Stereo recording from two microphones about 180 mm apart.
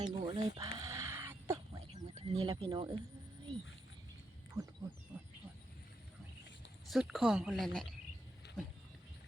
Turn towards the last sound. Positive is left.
turn(degrees=0)  # may be behind; listen again after turning